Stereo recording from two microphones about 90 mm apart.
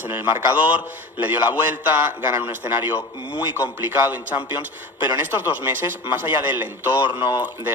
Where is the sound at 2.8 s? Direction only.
20° right (ahead or behind).